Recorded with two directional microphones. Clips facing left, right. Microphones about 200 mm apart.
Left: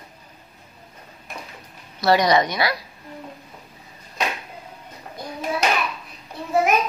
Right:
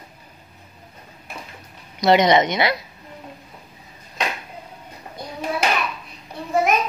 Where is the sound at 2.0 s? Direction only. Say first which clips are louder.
Right 2 dB; 20° right (ahead or behind).